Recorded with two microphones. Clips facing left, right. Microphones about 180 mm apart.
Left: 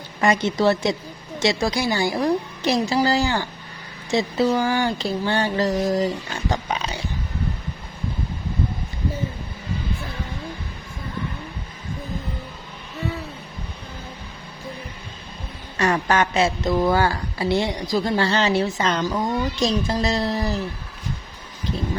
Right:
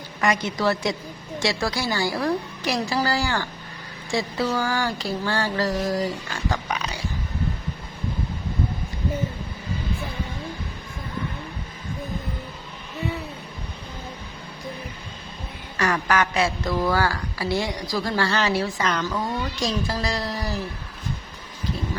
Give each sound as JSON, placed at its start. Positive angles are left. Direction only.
{"t": 0.2, "sound": "a woman's voice", "side_deg": 25}
{"t": 6.5, "sound": "dog", "side_deg": 25}
{"t": 15.8, "sound": "a woman's voice", "side_deg": 25}